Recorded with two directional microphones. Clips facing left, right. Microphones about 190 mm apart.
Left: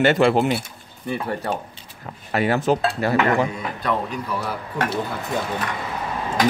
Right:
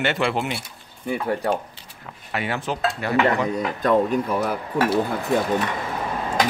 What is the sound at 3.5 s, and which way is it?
Speech, 45° right (ahead or behind).